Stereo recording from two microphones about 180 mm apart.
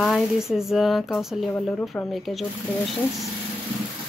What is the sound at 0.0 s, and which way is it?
Speech, centre (ahead or behind).